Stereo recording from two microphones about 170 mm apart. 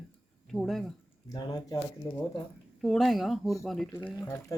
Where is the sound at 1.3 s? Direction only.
25° left (ahead or behind).